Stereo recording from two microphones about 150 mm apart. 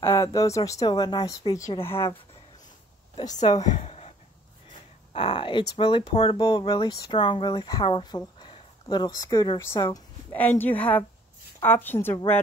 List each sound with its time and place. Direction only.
0.0 s speech: 20° left (ahead or behind)
3.7 s a sound: 45° left (ahead or behind)
5.1 s speech: 35° left (ahead or behind)
10.3 s speech: 10° left (ahead or behind)